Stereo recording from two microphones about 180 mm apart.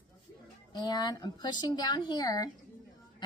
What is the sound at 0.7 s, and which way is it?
Speech, 20° left (ahead or behind).